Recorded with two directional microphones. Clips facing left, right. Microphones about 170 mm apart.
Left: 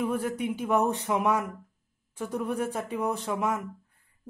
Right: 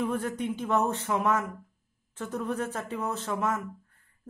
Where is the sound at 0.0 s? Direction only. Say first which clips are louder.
Left 1 dB; 10° left (ahead or behind).